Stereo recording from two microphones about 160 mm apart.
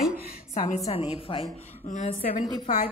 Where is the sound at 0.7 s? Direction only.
40° left (ahead or behind).